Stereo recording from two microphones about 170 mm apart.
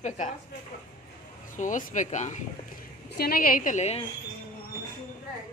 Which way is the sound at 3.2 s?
60° left (ahead or behind).